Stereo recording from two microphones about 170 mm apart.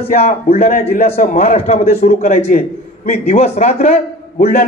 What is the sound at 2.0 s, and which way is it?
A man's voice, 50° left (ahead or behind).